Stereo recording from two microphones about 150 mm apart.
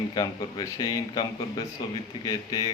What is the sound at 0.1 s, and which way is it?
Speech, 30° left (ahead or behind).